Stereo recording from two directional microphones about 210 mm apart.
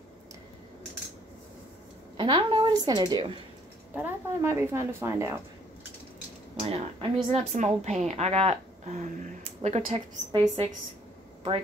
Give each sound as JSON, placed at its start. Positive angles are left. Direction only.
{"t": 2.1, "sound": "a woman's voice", "side_deg": -20}
{"t": 3.9, "sound": "a woman's voice", "side_deg": -10}
{"t": 6.6, "sound": "a woman's voice", "side_deg": -30}
{"t": 10.4, "sound": "a woman's voice", "side_deg": -20}